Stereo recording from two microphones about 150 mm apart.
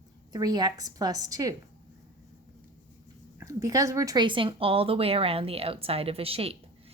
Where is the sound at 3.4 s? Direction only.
20° right (ahead or behind); by 6.5 s 40° right (ahead or behind).